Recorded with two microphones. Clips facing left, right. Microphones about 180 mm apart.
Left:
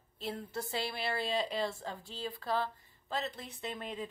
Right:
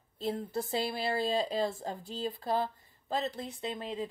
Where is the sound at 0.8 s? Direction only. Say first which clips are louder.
Right 4 dB; 40° right (ahead or behind).